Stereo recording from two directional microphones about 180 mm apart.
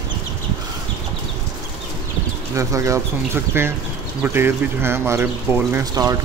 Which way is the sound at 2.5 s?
15° right (ahead or behind).